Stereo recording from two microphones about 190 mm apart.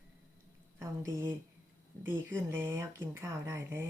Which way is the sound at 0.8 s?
15° right (ahead or behind).